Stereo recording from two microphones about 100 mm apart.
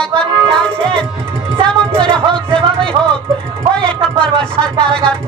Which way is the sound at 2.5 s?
55° right (ahead or behind).